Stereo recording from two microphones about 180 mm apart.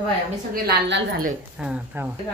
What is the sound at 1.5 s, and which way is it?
Speech, 5° right (ahead or behind).